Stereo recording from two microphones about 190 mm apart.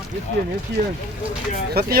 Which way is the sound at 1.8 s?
55° right (ahead or behind).